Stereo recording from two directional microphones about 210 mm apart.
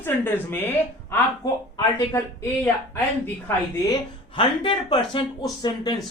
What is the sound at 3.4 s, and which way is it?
A woman's voice, 20° left (ahead or behind).